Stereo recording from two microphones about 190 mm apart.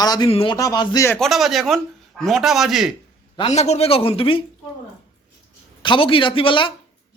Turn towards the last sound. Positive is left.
turn(degrees=25)  # may be behind; listen again after turning